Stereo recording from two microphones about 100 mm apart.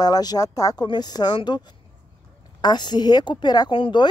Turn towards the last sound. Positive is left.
turn(degrees=55)  # may be behind; listen again after turning